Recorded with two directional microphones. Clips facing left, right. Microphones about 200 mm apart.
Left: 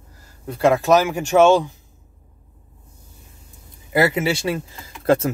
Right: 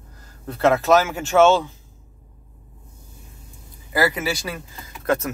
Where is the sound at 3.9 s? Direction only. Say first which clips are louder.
Left 3 dB; 25° left (ahead or behind).